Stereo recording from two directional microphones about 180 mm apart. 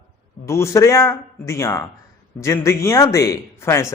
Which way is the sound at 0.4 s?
15° left (ahead or behind).